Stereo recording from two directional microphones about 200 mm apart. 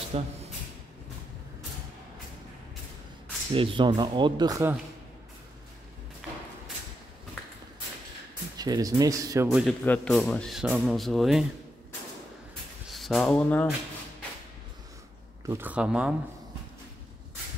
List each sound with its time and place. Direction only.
0.1 s speech: 30° right (ahead or behind)
3.5 s speech: 25° right (ahead or behind)
8.5 s speech: 20° right (ahead or behind)
9.5 s speech: centre (ahead or behind)
12.9 s speech: centre (ahead or behind)
15.4 s speech: 10° right (ahead or behind)